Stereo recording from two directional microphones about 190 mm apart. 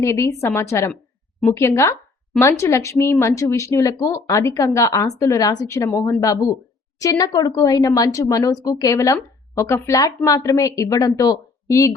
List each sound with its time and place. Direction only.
0.0 s speech: 15° left (ahead or behind)